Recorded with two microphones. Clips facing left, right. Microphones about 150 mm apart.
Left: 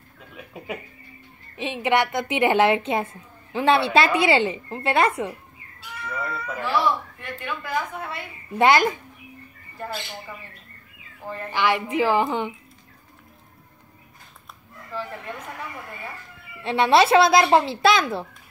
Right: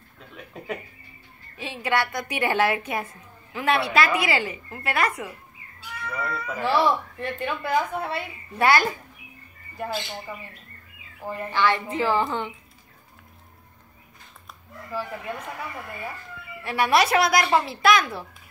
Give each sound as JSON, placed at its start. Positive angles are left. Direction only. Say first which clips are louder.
{"t": 0.3, "sound": "a sound", "louder": "even", "side_deg": 5}
{"t": 1.6, "sound": "a woman's voice", "louder": "left 4 dB", "side_deg": 20}
{"t": 6.1, "sound": "speech", "louder": "even", "side_deg": 0}
{"t": 6.6, "sound": "a woman's voice", "louder": "right 2 dB", "side_deg": -35}
{"t": 8.5, "sound": "a woman's voice", "louder": "left 3 dB", "side_deg": 20}
{"t": 11.2, "sound": "a woman's voice", "louder": "right 1 dB", "side_deg": -10}
{"t": 11.5, "sound": "a woman's voice", "louder": "left 1 dB", "side_deg": 15}
{"t": 14.9, "sound": "a woman's voice", "louder": "right 1 dB", "side_deg": -10}
{"t": 16.6, "sound": "a woman's voice", "louder": "left 4 dB", "side_deg": 25}